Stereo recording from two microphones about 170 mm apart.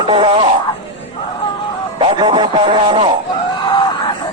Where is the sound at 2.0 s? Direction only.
30° right (ahead or behind).